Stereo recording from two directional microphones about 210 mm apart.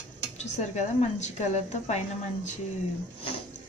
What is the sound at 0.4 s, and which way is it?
A woman's voice, 35° left (ahead or behind).